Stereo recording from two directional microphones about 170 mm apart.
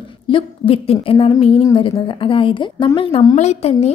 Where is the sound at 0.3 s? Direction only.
30° left (ahead or behind).